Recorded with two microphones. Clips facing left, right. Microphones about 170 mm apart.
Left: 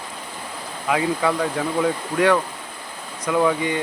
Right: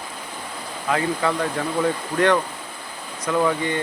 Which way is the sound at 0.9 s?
10° left (ahead or behind).